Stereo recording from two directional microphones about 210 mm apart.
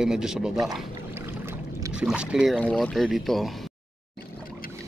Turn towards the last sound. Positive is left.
turn(degrees=0)  # may be behind; listen again after turning